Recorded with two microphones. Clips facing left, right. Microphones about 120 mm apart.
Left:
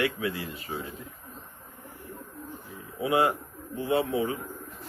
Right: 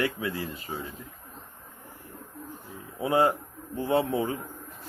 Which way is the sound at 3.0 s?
35° right (ahead or behind).